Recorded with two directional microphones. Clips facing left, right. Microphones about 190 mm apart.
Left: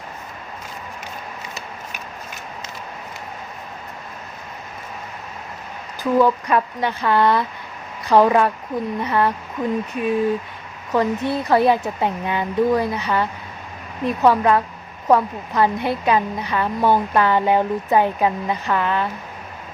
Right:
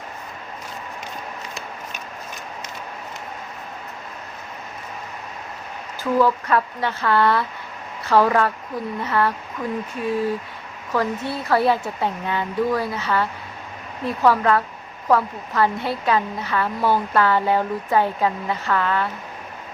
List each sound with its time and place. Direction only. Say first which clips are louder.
6.0 s a woman's voice: left 2 dB; 15° left (ahead or behind)